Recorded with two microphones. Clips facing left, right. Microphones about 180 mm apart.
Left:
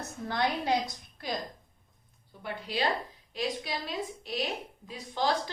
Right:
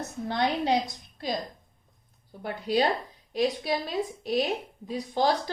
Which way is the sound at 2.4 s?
40° right (ahead or behind).